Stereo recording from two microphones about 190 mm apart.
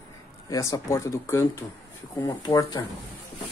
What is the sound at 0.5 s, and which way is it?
Speech, 15° left (ahead or behind).